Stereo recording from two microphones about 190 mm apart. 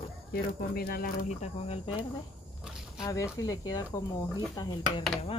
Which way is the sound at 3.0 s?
20° left (ahead or behind).